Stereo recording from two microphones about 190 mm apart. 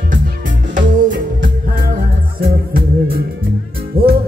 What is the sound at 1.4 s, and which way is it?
Music, 50° right (ahead or behind).